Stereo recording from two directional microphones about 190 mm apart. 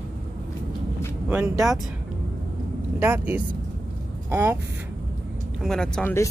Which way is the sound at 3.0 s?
10° right (ahead or behind).